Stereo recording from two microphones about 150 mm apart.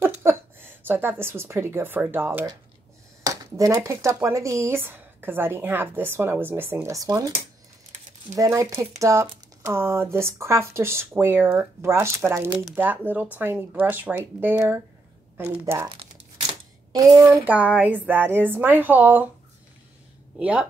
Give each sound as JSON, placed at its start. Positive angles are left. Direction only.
{"t": 0.0, "sound": "a woman's voice", "side_deg": -15}
{"t": 8.4, "sound": "a child's voice", "side_deg": -20}
{"t": 16.9, "sound": "a child's voice", "side_deg": -25}
{"t": 17.7, "sound": "speech", "side_deg": -10}
{"t": 20.3, "sound": "speech", "side_deg": -10}